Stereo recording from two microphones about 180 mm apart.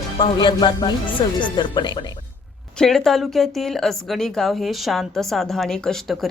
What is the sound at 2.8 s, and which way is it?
A woman's voice, centre (ahead or behind).